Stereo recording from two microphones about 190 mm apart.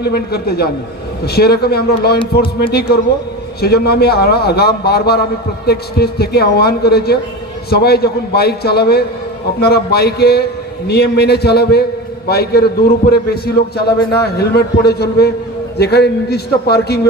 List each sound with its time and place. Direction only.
0.0 s a man's voice: 55° left (ahead or behind)